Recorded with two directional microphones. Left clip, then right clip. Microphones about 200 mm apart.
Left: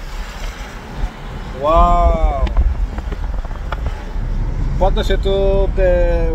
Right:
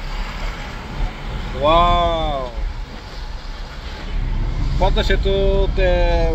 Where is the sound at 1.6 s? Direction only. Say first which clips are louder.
Left 1 dB; 10° right (ahead or behind).